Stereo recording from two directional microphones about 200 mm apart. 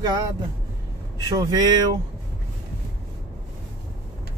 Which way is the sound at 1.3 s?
20° right (ahead or behind).